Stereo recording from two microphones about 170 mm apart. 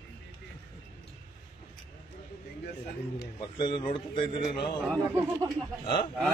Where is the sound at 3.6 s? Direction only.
30° left (ahead or behind).